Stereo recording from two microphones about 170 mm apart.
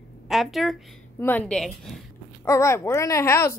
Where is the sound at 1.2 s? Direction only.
10° left (ahead or behind).